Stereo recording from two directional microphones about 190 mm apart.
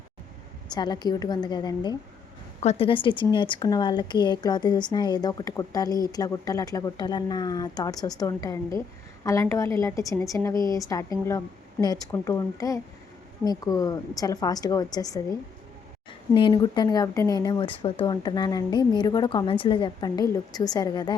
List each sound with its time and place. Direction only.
0.7 s speech: 20° left (ahead or behind)
2.6 s a woman's voice: 30° left (ahead or behind)